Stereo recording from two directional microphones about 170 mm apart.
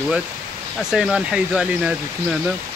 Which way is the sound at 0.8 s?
Centre (ahead or behind).